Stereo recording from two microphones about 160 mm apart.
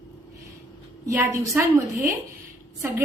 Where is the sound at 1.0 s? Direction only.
20° right (ahead or behind).